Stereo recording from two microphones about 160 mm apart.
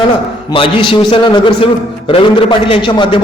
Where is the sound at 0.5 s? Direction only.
35° left (ahead or behind).